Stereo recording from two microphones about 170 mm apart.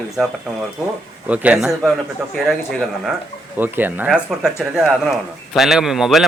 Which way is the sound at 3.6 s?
10° right (ahead or behind).